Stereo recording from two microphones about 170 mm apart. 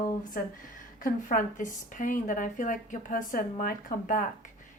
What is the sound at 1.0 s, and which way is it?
Speech, 50° left (ahead or behind).